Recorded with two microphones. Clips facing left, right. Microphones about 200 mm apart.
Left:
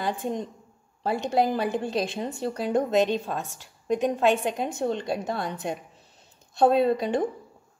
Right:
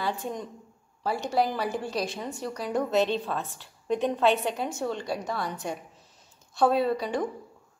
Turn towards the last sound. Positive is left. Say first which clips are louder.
# left 4 dB
turn(degrees=25)  # may be behind; listen again after turning